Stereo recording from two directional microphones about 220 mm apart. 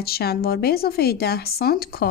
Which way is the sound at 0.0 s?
45° left (ahead or behind).